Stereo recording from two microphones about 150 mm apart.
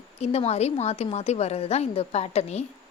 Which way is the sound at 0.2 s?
45° left (ahead or behind).